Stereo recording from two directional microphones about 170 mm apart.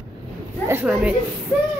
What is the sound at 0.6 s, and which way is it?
Speech, 10° right (ahead or behind).